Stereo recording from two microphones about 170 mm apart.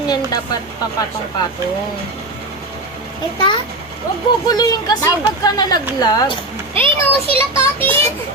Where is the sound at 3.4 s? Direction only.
25° left (ahead or behind).